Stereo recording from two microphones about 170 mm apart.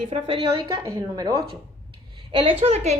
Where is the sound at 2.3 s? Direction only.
30° right (ahead or behind).